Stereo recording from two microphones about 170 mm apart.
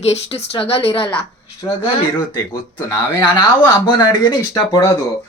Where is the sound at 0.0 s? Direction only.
40° left (ahead or behind).